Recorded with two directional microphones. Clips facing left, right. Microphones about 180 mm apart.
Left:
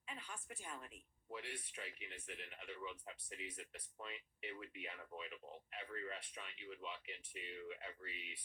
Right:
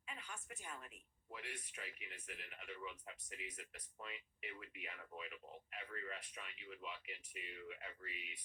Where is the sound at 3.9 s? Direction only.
Centre (ahead or behind).